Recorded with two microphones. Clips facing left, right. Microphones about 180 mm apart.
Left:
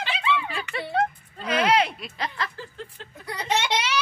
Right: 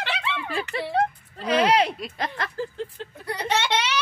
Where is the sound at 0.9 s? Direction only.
35° right (ahead or behind); by 2.6 s 50° right (ahead or behind).